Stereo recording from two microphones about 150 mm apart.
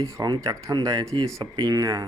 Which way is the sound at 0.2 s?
25° right (ahead or behind).